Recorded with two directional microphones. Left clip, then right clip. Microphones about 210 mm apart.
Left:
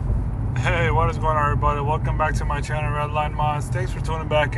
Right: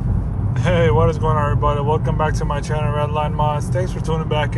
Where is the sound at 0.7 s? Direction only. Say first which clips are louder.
Right 5 dB; 10° right (ahead or behind).